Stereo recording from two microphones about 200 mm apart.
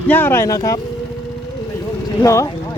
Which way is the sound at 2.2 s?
15° left (ahead or behind).